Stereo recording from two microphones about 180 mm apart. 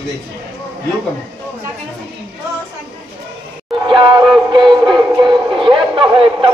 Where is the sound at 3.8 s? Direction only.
25° right (ahead or behind).